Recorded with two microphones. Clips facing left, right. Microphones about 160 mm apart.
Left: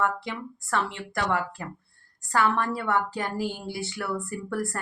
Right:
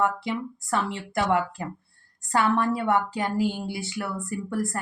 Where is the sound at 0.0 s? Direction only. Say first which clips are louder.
Right 3 dB; 20° right (ahead or behind).